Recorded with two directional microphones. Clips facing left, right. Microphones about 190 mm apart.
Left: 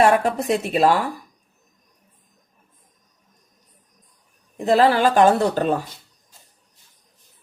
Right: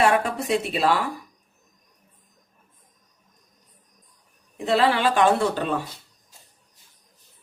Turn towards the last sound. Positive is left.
turn(degrees=40)  # may be behind; listen again after turning